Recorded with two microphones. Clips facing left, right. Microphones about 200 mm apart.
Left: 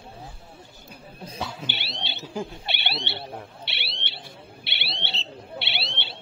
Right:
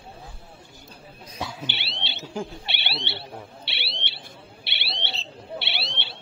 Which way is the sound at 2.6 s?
45° left (ahead or behind).